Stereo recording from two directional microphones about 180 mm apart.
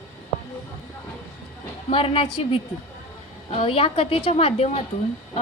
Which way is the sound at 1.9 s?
30° left (ahead or behind).